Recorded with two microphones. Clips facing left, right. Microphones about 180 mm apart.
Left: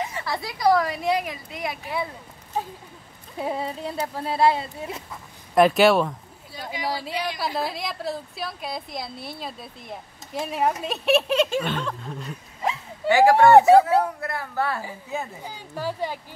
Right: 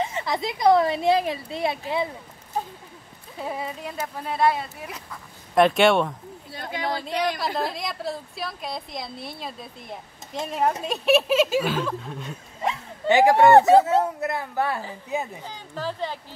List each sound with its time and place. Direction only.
0.0 s speech: 20° right (ahead or behind)
3.5 s speech: 30° left (ahead or behind)
5.5 s a woman's voice: centre (ahead or behind)
13.1 s speech: 20° right (ahead or behind)
15.4 s speech: 10° left (ahead or behind)